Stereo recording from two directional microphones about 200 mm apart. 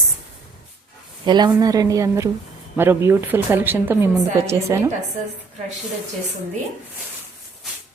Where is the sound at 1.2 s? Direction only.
20° right (ahead or behind).